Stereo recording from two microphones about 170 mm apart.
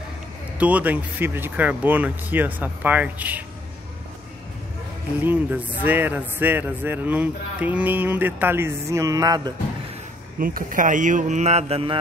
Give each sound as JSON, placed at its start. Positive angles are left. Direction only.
{"t": 0.6, "sound": "speech", "side_deg": -10}
{"t": 5.2, "sound": "speech", "side_deg": -10}
{"t": 10.4, "sound": "speech", "side_deg": -55}